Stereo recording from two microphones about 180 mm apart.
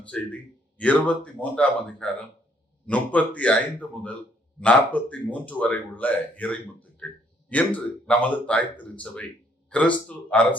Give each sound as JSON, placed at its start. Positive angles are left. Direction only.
{"t": 0.0, "sound": "speech", "side_deg": 5}